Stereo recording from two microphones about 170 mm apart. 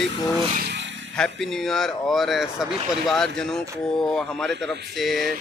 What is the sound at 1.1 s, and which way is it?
Speech, 5° left (ahead or behind).